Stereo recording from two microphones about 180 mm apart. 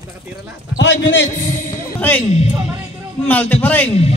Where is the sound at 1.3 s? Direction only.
45° left (ahead or behind).